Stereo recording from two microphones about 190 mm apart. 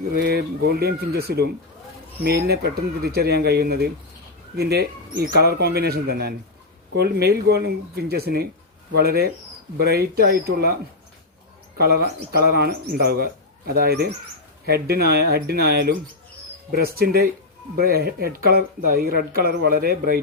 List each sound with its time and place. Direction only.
0.1 s speech: 55° right (ahead or behind)
11.8 s speech: 55° right (ahead or behind)